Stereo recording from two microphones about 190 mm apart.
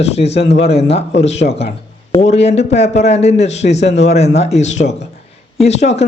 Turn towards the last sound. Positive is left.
turn(degrees=35)  # may be behind; listen again after turning